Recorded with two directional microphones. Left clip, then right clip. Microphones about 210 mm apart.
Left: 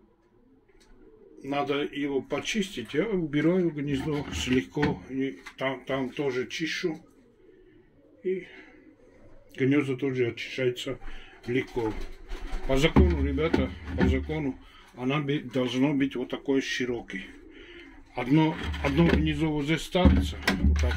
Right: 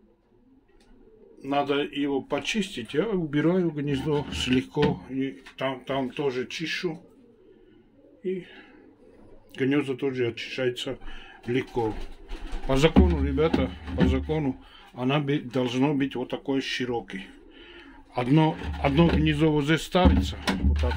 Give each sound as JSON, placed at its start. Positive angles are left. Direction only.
{"t": 1.4, "sound": "speech", "side_deg": -5}
{"t": 8.2, "sound": "speech", "side_deg": -5}
{"t": 9.6, "sound": "speech", "side_deg": -5}
{"t": 17.7, "sound": "speech", "side_deg": -20}
{"t": 19.2, "sound": "speech", "side_deg": -35}